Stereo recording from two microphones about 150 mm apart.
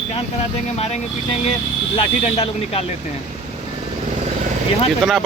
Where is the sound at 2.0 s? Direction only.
40° left (ahead or behind).